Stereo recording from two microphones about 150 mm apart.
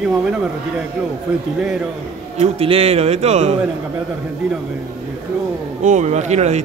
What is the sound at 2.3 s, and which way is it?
A man's voice, 40° right (ahead or behind).